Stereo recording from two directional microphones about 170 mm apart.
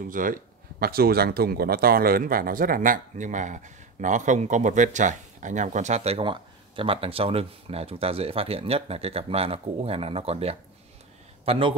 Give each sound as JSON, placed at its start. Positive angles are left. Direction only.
{"t": 0.0, "sound": "a man's voice", "side_deg": -55}